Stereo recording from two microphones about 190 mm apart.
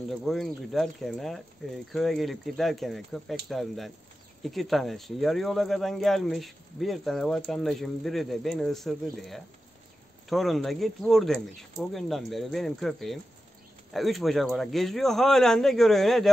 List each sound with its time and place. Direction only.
0.1 s speech: centre (ahead or behind)